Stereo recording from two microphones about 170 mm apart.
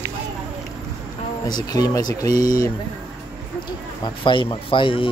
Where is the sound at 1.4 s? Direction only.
25° left (ahead or behind).